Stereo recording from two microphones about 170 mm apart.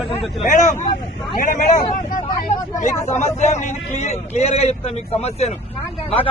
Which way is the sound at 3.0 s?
40° left (ahead or behind).